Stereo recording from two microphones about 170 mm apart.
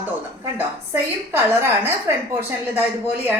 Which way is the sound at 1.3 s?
15° right (ahead or behind).